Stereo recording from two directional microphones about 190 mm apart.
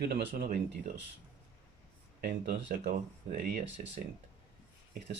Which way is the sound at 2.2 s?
45° right (ahead or behind).